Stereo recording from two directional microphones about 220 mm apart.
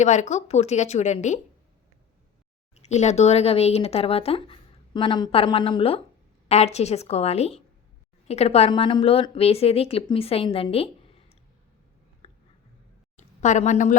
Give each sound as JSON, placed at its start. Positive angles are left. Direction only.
{"t": 0.0, "sound": "speech", "side_deg": 30}
{"t": 2.7, "sound": "speech", "side_deg": 30}
{"t": 12.2, "sound": "a sound", "side_deg": 25}